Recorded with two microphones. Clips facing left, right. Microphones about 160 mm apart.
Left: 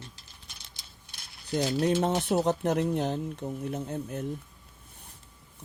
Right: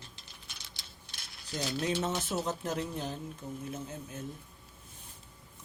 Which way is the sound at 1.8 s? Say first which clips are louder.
Left 6 dB; 45° left (ahead or behind).